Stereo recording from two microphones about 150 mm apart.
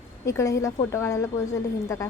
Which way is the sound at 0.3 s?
20° left (ahead or behind).